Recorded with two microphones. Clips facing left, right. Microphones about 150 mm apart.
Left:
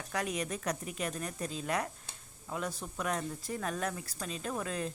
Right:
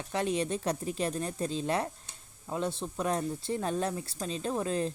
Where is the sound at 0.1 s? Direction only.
30° right (ahead or behind).